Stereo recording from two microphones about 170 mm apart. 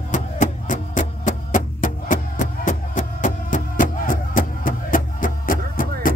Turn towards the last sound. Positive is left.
turn(degrees=55)  # may be behind; listen again after turning